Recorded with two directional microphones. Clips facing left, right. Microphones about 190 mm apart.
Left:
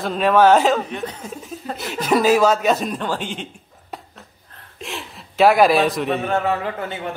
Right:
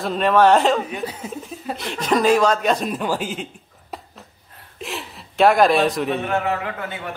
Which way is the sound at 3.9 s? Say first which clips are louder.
Even; centre (ahead or behind).